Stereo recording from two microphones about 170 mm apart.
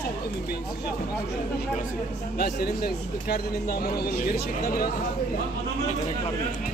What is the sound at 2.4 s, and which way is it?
Speech, 65° left (ahead or behind).